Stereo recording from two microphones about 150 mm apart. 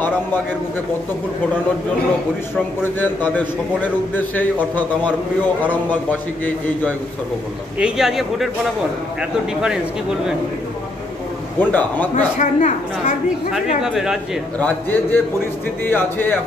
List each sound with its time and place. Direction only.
2.8 s a man's voice: 10° left (ahead or behind)
5.6 s a man's voice: 10° left (ahead or behind)
7.8 s speech: centre (ahead or behind)
11.5 s a man's voice: 10° left (ahead or behind)
12.4 s a woman's voice: 50° left (ahead or behind)
13.8 s speech: 5° right (ahead or behind)
14.6 s a man's voice: 10° left (ahead or behind)